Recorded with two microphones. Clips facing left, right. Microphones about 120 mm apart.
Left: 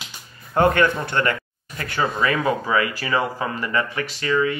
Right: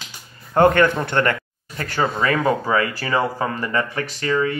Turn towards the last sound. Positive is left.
turn(degrees=-35)  # may be behind; listen again after turning